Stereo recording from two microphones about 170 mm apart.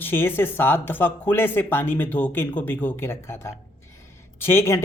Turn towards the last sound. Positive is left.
turn(degrees=15)  # may be behind; listen again after turning